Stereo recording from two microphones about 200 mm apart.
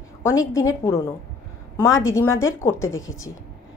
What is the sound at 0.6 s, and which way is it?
Speech, 15° left (ahead or behind).